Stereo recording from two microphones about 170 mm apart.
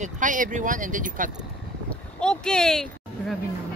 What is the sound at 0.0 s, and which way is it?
Speech, 50° right (ahead or behind).